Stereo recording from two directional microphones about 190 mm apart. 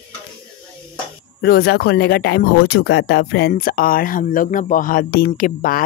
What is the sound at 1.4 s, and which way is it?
Speech, 55° left (ahead or behind).